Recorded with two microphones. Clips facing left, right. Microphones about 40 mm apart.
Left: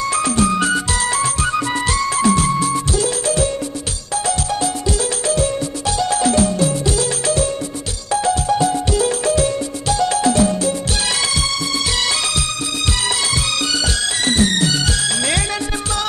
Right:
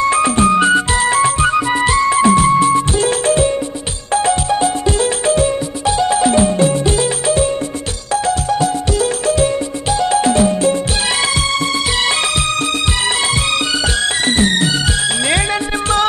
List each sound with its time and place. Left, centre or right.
0.0 s music: right
14.2 s music: right